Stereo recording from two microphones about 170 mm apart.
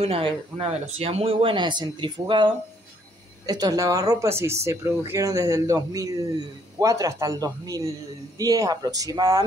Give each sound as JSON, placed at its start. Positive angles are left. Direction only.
{"t": 0.0, "sound": "speech", "side_deg": -35}